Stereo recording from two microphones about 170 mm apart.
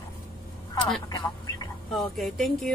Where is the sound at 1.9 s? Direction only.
Centre (ahead or behind).